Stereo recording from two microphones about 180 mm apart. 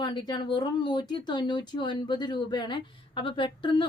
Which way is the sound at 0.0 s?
25° left (ahead or behind).